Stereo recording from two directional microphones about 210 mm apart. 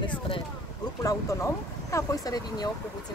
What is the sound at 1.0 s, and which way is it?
Speech, 15° left (ahead or behind).